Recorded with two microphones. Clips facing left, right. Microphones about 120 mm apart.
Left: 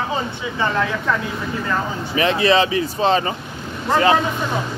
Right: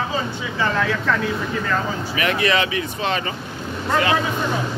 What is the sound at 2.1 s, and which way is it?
Speech, 30° left (ahead or behind).